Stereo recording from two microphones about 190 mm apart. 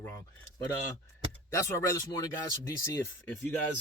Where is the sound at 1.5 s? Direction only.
15° left (ahead or behind).